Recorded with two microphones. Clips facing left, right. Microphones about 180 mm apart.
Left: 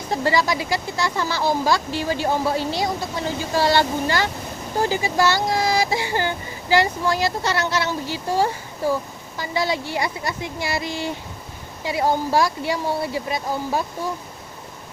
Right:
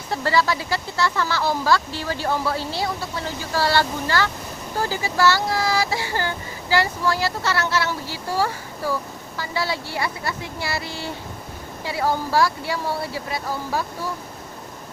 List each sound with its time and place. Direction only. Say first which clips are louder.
0.1 s speech: left 1 dB; 15° left (ahead or behind)